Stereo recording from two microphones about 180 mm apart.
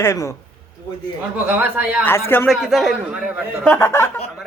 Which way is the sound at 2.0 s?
10° left (ahead or behind).